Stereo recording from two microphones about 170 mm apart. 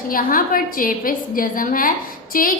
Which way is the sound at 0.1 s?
55° left (ahead or behind).